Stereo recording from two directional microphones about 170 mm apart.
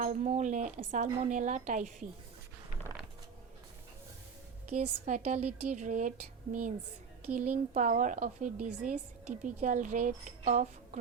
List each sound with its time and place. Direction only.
0.0 s speech: 45° right (ahead or behind)
4.7 s speech: 45° right (ahead or behind)